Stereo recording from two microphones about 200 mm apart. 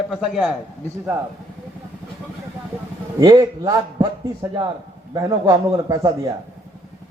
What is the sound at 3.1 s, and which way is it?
Speech, 20° right (ahead or behind).